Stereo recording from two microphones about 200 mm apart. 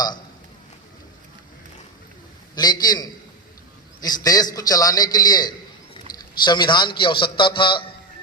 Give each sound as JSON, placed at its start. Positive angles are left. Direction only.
{"t": 2.6, "sound": "a man's voice", "side_deg": 20}